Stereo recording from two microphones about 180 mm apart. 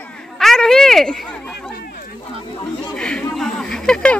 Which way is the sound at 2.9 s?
5° left (ahead or behind).